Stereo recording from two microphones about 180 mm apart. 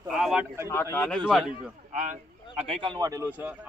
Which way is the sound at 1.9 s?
40° right (ahead or behind).